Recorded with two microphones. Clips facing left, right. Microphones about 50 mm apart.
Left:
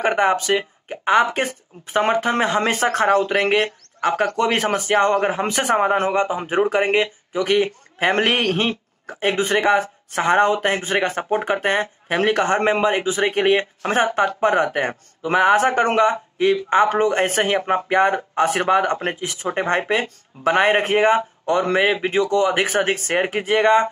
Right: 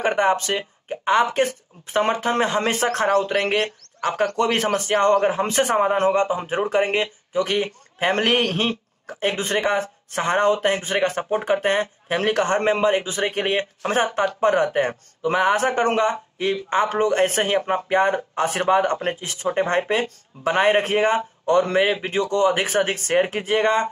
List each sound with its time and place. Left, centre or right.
0.0 s a man's voice: centre
10.3 s speech: centre
11.4 s speech: left
11.7 s speech: centre